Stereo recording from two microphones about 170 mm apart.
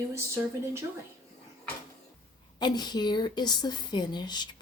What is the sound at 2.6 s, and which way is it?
A woman's voice, 25° left (ahead or behind).